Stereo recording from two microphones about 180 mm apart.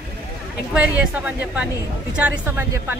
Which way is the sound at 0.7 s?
5° right (ahead or behind).